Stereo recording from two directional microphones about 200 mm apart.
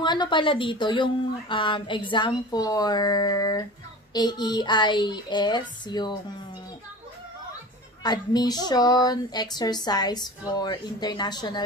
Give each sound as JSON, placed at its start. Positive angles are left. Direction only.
{"t": 0.0, "sound": "speech", "side_deg": 20}
{"t": 8.0, "sound": "speech", "side_deg": 20}